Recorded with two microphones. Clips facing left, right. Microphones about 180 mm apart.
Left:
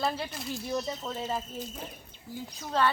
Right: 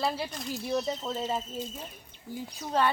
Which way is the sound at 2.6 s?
10° right (ahead or behind).